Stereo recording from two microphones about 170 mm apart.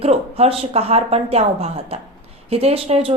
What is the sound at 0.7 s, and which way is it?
A woman's voice, 35° right (ahead or behind).